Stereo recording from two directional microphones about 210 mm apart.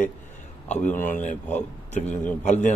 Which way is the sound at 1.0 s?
35° left (ahead or behind).